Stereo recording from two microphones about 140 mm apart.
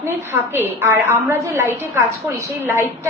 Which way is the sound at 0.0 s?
15° right (ahead or behind).